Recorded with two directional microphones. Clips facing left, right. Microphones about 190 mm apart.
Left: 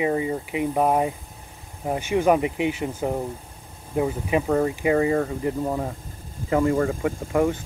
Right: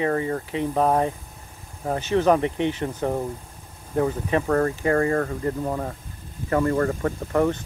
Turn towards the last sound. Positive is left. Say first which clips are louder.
# even
turn(degrees=10)  # may be behind; listen again after turning